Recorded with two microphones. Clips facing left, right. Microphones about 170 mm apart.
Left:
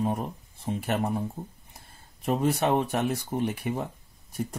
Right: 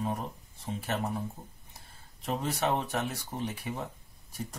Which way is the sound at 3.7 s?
55° left (ahead or behind).